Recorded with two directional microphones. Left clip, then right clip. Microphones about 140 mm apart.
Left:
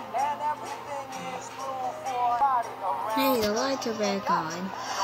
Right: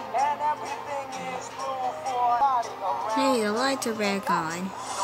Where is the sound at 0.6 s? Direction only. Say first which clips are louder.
Right 3 dB; 30° right (ahead or behind).